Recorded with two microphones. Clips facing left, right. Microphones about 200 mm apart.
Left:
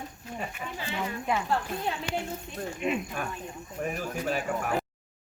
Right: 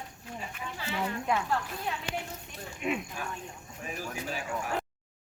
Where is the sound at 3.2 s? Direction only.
55° left (ahead or behind).